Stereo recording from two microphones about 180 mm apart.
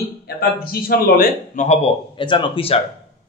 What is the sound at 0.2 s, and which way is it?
A man's voice, 60° left (ahead or behind).